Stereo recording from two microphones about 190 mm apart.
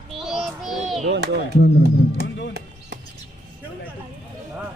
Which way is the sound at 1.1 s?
60° right (ahead or behind).